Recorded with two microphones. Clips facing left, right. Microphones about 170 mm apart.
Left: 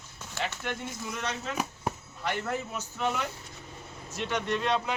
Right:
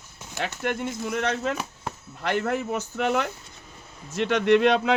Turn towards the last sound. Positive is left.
turn(degrees=-90)